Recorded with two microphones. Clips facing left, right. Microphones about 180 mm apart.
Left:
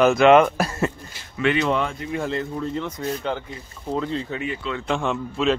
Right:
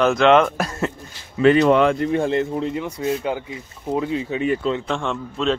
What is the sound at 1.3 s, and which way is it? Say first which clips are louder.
Speech: right 7 dB; 40° right (ahead or behind).